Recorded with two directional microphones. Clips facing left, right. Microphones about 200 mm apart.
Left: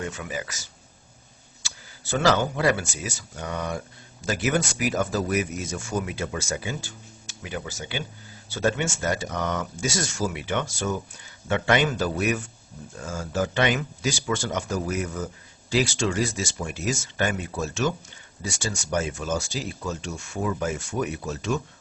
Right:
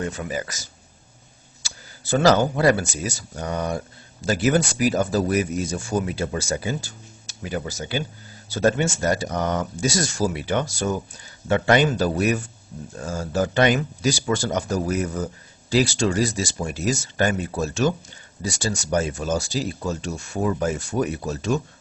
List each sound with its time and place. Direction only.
0.0 s speech: 35° right (ahead or behind)
1.6 s speech: 40° right (ahead or behind)